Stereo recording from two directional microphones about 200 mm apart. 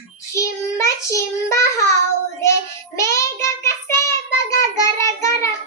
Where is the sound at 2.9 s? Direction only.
15° left (ahead or behind).